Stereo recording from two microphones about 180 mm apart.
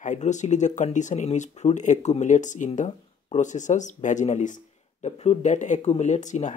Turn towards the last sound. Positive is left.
turn(degrees=40)  # may be behind; listen again after turning